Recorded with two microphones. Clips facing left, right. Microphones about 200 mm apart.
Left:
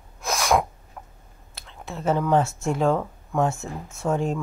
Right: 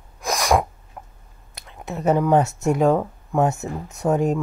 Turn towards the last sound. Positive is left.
turn(degrees=-20)  # may be behind; listen again after turning